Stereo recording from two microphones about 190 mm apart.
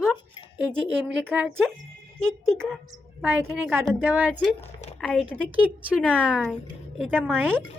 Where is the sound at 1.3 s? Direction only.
10° right (ahead or behind).